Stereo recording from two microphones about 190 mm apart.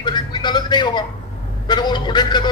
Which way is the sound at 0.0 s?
25° left (ahead or behind).